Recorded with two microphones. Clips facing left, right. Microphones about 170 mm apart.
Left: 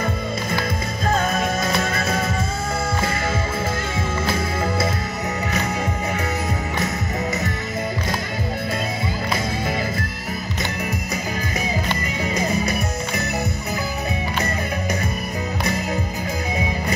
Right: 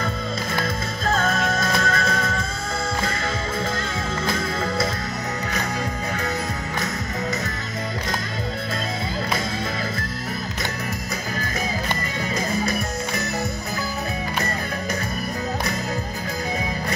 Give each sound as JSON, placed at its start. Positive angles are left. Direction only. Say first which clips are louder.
{"t": 1.1, "sound": "music", "louder": "left 1 dB", "side_deg": 20}
{"t": 12.4, "sound": "music", "louder": "left 1 dB", "side_deg": 20}